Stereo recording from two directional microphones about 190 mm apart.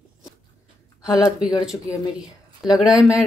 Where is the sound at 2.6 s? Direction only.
Centre (ahead or behind).